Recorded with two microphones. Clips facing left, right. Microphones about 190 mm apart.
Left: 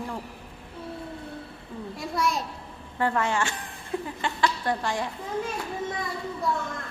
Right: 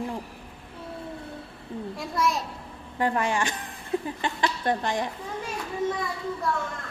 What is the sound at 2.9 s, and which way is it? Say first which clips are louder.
A woman's voice: even; 15° right (ahead or behind).